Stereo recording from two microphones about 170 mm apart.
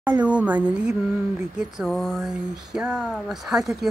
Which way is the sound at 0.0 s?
10° right (ahead or behind).